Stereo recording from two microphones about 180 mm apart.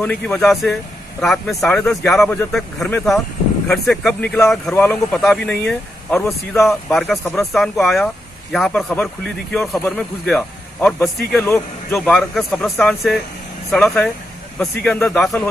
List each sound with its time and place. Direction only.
0.0 s speech: 5° left (ahead or behind)
11.4 s speech: 15° left (ahead or behind)
12.0 s speech: 5° left (ahead or behind)